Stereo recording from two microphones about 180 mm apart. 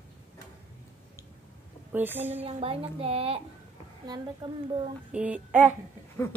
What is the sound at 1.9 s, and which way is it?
Speech, 10° right (ahead or behind).